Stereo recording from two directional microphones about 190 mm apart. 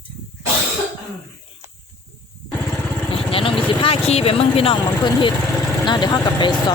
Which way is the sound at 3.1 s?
30° left (ahead or behind).